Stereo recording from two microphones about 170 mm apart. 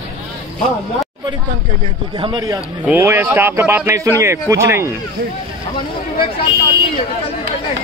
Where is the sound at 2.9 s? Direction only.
10° right (ahead or behind).